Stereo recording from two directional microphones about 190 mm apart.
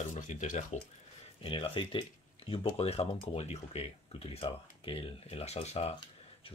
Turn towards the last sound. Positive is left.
turn(degrees=35)  # may be behind; listen again after turning